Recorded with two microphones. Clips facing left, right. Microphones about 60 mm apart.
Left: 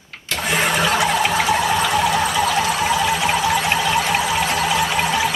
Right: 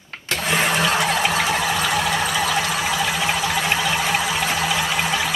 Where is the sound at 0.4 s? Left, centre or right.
Centre.